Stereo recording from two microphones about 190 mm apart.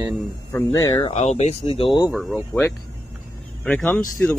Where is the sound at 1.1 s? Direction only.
35° left (ahead or behind).